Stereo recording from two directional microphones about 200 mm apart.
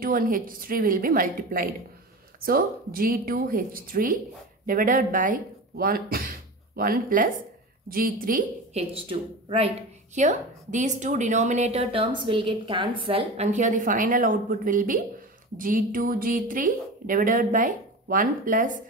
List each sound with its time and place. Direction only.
0.0 s speech: 45° right (ahead or behind)
9.5 s a woman's voice: 30° right (ahead or behind)